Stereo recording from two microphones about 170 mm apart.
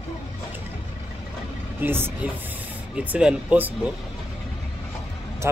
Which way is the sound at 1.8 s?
15° right (ahead or behind).